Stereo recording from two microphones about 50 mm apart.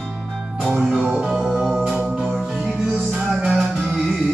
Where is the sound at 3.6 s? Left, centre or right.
Right.